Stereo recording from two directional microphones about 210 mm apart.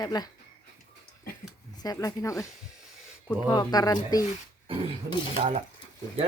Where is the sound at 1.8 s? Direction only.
15° left (ahead or behind).